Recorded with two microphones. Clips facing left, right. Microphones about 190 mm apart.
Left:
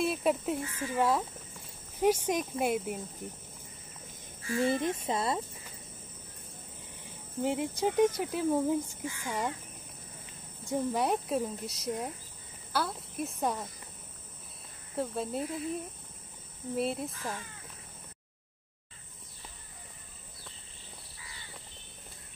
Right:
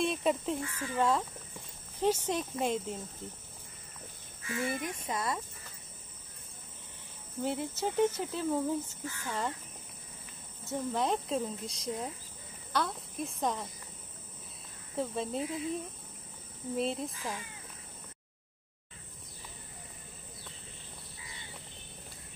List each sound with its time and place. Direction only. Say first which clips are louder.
0.0 s speech: left 1 dB; 5° left (ahead or behind)
4.4 s speech: left 6 dB; 30° left (ahead or behind)
7.4 s speech: left 4 dB; 15° left (ahead or behind)
10.7 s speech: left 2 dB; 10° left (ahead or behind)
15.0 s speech: left 1 dB; centre (ahead or behind)
16.7 s speech: left 1 dB; 5° left (ahead or behind)